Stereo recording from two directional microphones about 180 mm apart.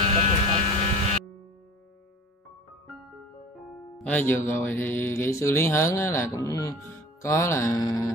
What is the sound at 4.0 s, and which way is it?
Mantra, 10° left (ahead or behind).